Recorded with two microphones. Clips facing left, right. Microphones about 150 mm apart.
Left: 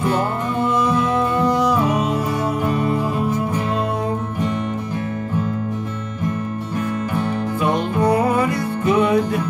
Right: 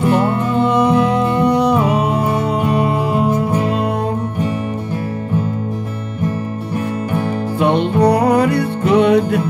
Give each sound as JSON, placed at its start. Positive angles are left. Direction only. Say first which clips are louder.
{"t": 0.6, "sound": "music", "louder": "right 5 dB", "side_deg": -65}
{"t": 7.6, "sound": "music", "louder": "right 6 dB", "side_deg": -70}